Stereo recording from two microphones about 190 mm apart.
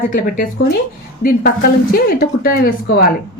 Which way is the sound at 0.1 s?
45° left (ahead or behind).